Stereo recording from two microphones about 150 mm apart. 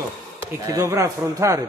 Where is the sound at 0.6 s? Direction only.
20° right (ahead or behind).